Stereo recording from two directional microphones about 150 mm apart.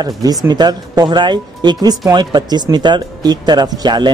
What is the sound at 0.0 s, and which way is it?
Speech, 25° right (ahead or behind).